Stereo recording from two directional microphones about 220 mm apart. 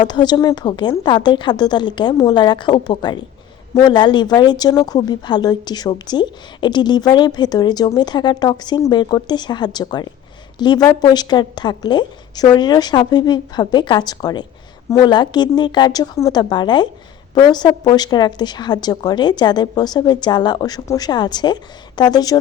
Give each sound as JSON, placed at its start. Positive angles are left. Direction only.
{"t": 0.0, "sound": "speech", "side_deg": 20}